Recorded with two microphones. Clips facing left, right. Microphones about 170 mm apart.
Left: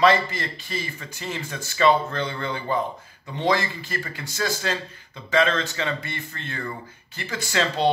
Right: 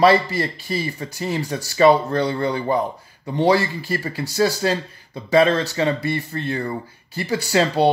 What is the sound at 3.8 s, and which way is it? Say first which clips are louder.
Speech: right 7 dB; 35° right (ahead or behind).